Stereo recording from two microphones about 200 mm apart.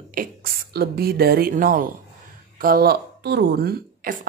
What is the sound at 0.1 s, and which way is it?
A woman's voice, 45° right (ahead or behind).